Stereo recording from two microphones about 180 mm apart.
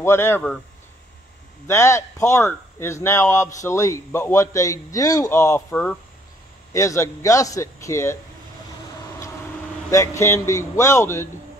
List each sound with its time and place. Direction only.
0.0 s a man's voice: 15° left (ahead or behind)
1.7 s a man's voice: 15° left (ahead or behind)
9.8 s a man's voice: 15° left (ahead or behind)